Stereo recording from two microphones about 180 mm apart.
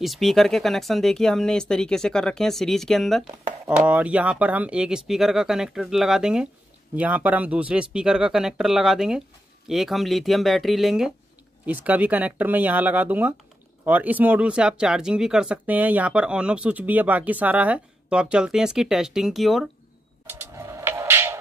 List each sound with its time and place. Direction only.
0.0 s speech: centre (ahead or behind)
20.2 s music: 10° right (ahead or behind)